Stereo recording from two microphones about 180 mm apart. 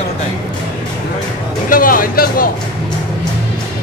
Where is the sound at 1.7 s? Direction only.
50° left (ahead or behind).